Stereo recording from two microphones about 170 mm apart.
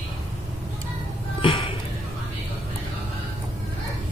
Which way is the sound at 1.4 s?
30° left (ahead or behind).